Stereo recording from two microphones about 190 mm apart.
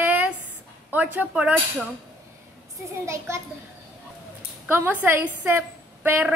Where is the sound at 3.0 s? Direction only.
15° right (ahead or behind).